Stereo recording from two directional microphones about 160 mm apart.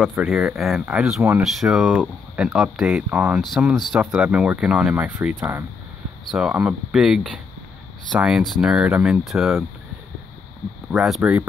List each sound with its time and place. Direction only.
0.0 s speech: 5° right (ahead or behind)
3.5 s speech: centre (ahead or behind); by 5.7 s 15° right (ahead or behind)
6.3 s speech: 5° right (ahead or behind)
10.9 s speech: centre (ahead or behind)